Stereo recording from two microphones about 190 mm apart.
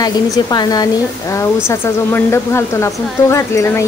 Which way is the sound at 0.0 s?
20° left (ahead or behind).